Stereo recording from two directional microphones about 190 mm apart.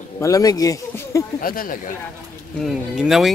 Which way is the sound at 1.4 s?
50° left (ahead or behind).